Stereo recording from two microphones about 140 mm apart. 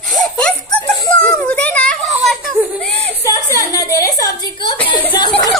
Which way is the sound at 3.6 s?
25° left (ahead or behind).